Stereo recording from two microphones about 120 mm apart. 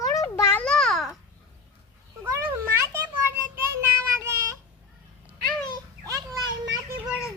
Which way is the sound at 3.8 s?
25° right (ahead or behind).